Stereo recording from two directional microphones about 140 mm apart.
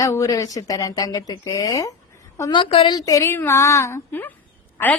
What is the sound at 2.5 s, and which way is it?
Speech, 40° left (ahead or behind).